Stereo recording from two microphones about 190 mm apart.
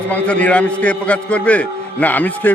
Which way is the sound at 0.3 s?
5° left (ahead or behind).